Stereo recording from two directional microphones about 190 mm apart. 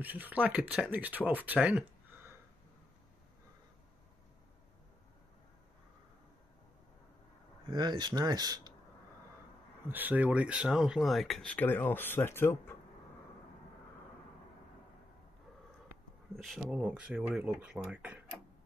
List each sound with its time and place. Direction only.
0.0 s speech: 10° right (ahead or behind)
7.7 s speech: 25° right (ahead or behind)
9.8 s speech: 10° right (ahead or behind); by 12.7 s 10° left (ahead or behind)
16.3 s speech: centre (ahead or behind)